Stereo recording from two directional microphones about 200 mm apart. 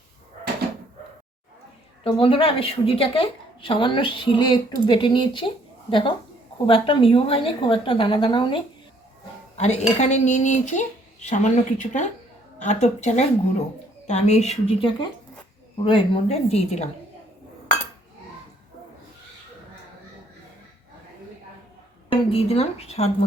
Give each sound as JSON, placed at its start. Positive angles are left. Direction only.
{"t": 2.0, "sound": "a woman's voice", "side_deg": 25}
{"t": 9.6, "sound": "speech", "side_deg": 35}
{"t": 22.1, "sound": "speech", "side_deg": 30}